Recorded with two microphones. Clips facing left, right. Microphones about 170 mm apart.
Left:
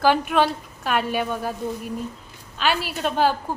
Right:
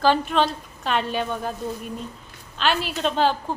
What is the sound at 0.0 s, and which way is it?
A woman's voice, 10° left (ahead or behind).